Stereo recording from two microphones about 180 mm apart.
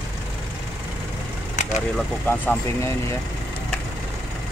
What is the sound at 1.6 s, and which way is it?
Vehicle, 45° left (ahead or behind).